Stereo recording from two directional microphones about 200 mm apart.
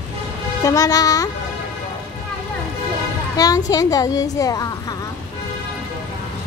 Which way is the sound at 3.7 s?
15° left (ahead or behind).